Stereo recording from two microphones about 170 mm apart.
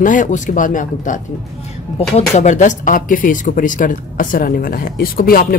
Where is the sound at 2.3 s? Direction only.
45° left (ahead or behind).